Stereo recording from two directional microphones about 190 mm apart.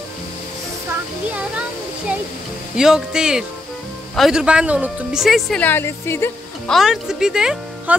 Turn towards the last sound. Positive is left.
turn(degrees=-5)  # may be behind; listen again after turning